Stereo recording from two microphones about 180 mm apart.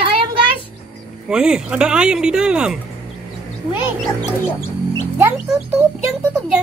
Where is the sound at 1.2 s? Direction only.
5° right (ahead or behind).